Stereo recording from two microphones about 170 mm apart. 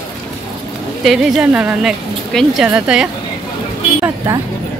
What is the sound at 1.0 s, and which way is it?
A woman's voice, centre (ahead or behind).